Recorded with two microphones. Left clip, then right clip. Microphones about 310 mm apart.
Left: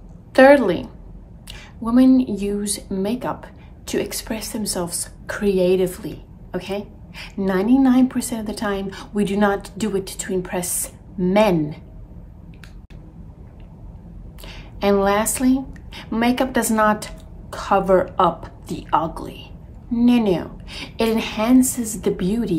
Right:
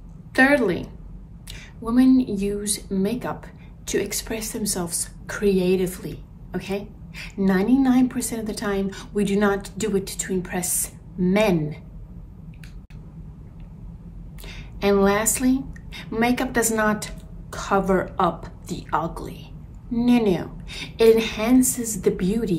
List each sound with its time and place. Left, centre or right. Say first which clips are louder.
0.3 s a woman's voice: left 6 dB; centre
14.4 s a woman's voice: left 2 dB; centre